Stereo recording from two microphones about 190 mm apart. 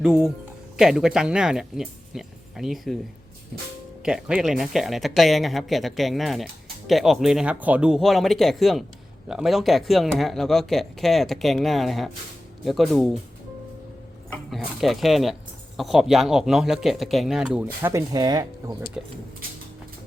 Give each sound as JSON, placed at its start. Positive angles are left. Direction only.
{"t": 0.0, "sound": "speech", "side_deg": -5}
{"t": 4.0, "sound": "speech", "side_deg": -5}
{"t": 14.3, "sound": "speech", "side_deg": 5}
{"t": 17.9, "sound": "speech", "side_deg": -20}